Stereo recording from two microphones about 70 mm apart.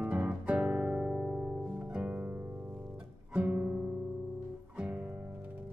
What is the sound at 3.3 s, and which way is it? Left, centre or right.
Music, right.